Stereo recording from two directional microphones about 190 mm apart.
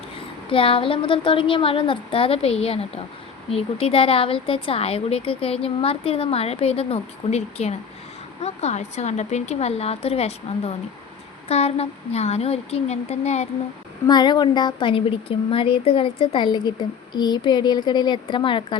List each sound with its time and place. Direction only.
0.5 s a woman's voice: 30° left (ahead or behind)
14.1 s a woman's voice: 20° left (ahead or behind)